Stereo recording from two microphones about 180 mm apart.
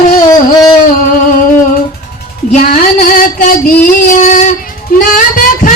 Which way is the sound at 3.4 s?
50° left (ahead or behind).